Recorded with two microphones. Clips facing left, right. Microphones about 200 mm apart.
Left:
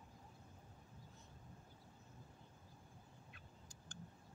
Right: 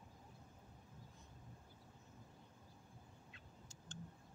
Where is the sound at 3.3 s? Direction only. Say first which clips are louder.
Right 1 dB; 25° right (ahead or behind).